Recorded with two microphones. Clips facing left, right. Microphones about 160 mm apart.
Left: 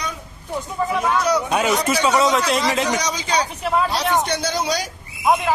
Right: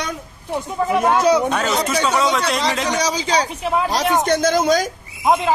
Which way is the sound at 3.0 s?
30° right (ahead or behind).